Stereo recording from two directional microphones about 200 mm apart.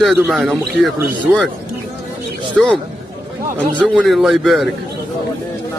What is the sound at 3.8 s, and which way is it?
Speech, centre (ahead or behind).